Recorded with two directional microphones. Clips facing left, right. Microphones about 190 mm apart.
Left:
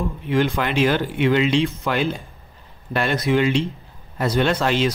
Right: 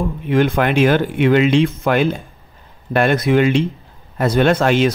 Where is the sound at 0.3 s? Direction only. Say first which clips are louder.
Right 5 dB; 55° right (ahead or behind).